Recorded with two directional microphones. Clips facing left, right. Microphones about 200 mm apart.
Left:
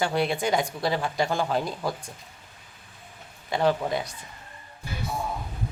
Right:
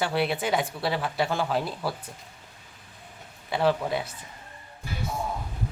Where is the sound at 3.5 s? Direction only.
5° right (ahead or behind).